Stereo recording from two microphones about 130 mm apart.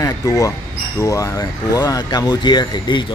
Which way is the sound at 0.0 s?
25° left (ahead or behind).